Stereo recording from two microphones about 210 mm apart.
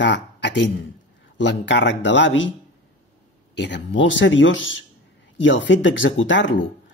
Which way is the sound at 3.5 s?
55° left (ahead or behind).